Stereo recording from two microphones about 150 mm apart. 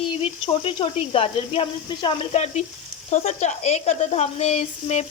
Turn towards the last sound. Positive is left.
turn(degrees=45)  # may be behind; listen again after turning